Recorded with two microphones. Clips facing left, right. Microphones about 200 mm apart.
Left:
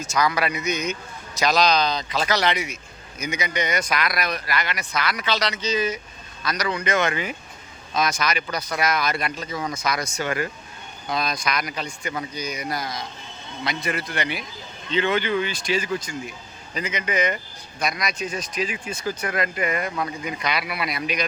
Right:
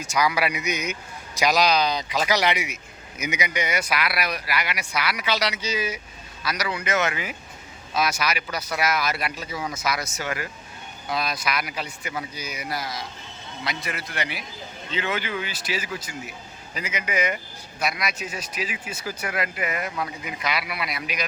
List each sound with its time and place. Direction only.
0.0 s speech: 10° right (ahead or behind)